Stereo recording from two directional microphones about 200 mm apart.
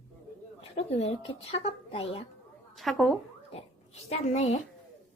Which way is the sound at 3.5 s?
30° left (ahead or behind).